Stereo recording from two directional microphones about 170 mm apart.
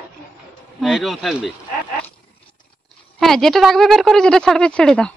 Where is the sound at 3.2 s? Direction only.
Centre (ahead or behind).